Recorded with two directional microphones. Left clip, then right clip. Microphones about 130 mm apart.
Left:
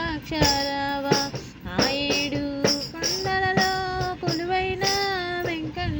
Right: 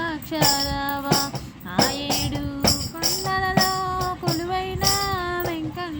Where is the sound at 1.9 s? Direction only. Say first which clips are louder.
Left 2 dB; 15° left (ahead or behind).